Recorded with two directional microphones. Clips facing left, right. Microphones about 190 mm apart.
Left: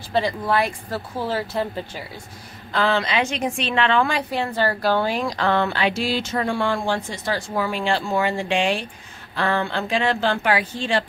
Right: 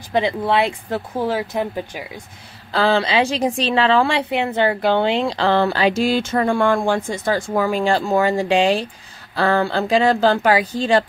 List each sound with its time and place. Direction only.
0.1 s speech: 25° right (ahead or behind)
2.7 s a woman's voice: 35° right (ahead or behind)